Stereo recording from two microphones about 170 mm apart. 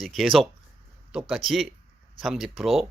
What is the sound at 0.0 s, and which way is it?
Speech, centre (ahead or behind).